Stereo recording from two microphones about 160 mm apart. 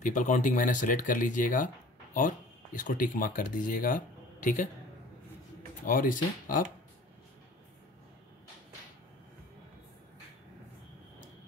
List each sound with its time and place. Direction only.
0.0 s speech: 50° left (ahead or behind)
5.9 s speech: 55° left (ahead or behind)